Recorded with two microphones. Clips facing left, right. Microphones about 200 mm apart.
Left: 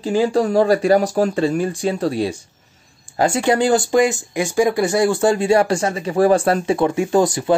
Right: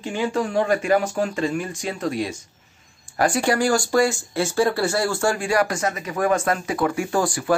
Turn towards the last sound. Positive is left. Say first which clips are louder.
# left 5 dB
turn(degrees=20)  # may be behind; listen again after turning